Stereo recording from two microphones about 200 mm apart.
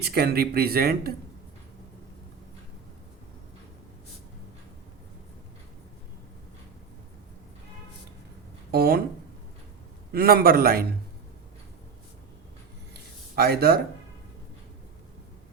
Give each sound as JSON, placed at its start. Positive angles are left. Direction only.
{"t": 0.0, "sound": "speech", "side_deg": -55}
{"t": 8.7, "sound": "speech", "side_deg": -50}
{"t": 10.1, "sound": "speech", "side_deg": -50}
{"t": 12.9, "sound": "a sound", "side_deg": -50}